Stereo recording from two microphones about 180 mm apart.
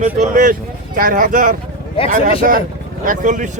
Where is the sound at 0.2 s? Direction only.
45° right (ahead or behind).